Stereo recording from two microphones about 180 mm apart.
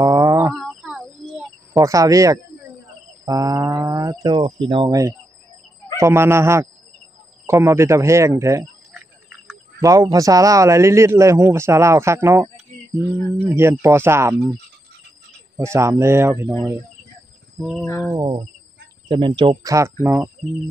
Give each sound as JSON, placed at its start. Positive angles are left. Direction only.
{"t": 0.0, "sound": "a sound", "side_deg": -20}
{"t": 0.5, "sound": "a sound", "side_deg": -5}
{"t": 1.7, "sound": "a man's voice", "side_deg": -15}
{"t": 8.9, "sound": "cricket", "side_deg": -5}
{"t": 9.8, "sound": "a man's voice", "side_deg": -20}
{"t": 13.6, "sound": "a man's voice", "side_deg": -15}
{"t": 15.5, "sound": "a man's voice", "side_deg": -15}
{"t": 17.6, "sound": "cricket", "side_deg": 0}
{"t": 18.1, "sound": "speech", "side_deg": -25}